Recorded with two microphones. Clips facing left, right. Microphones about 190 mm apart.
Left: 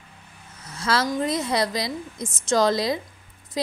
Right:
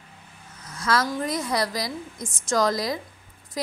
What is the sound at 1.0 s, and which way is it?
Speech, 20° left (ahead or behind).